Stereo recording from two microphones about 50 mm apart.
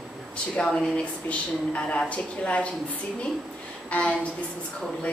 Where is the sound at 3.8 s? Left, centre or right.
Left.